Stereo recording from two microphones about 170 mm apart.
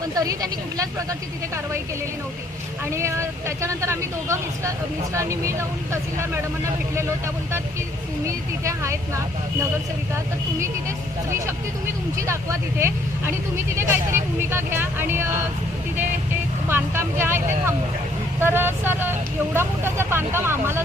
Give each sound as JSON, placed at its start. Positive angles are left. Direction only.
{"t": 0.0, "sound": "speech", "side_deg": -20}
{"t": 2.9, "sound": "speech", "side_deg": -15}
{"t": 8.3, "sound": "speech", "side_deg": -15}
{"t": 10.6, "sound": "speech", "side_deg": -15}
{"t": 16.6, "sound": "speech", "side_deg": -15}